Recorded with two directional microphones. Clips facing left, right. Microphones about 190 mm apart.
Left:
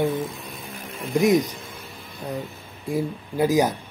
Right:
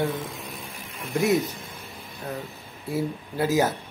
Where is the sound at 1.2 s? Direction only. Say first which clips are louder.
Left 4 dB; 15° left (ahead or behind).